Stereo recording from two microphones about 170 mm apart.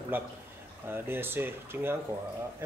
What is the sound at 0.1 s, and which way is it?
Speech, 10° right (ahead or behind).